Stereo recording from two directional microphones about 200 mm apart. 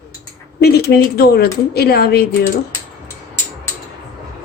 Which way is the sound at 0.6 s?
55° left (ahead or behind).